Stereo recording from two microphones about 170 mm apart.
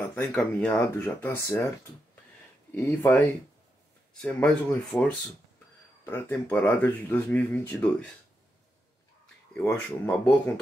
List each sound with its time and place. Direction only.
0.1 s speech: 10° left (ahead or behind)
2.7 s speech: 10° left (ahead or behind)
9.7 s speech: 10° left (ahead or behind)